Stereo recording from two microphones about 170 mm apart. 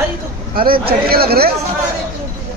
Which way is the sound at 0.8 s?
65° right (ahead or behind).